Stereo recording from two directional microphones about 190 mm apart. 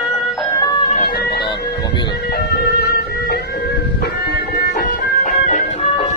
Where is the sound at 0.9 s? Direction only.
55° left (ahead or behind).